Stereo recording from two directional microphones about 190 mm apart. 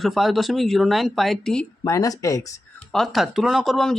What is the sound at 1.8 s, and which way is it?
Speech, 20° left (ahead or behind).